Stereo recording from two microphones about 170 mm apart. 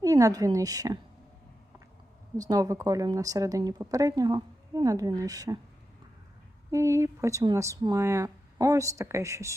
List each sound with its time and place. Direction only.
0.0 s speech: 20° right (ahead or behind)
2.4 s speech: 20° right (ahead or behind)
6.7 s speech: 20° right (ahead or behind)